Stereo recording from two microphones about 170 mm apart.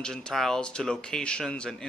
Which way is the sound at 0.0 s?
5° left (ahead or behind).